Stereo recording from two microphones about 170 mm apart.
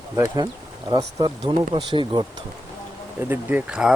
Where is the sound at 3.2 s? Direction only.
10° right (ahead or behind).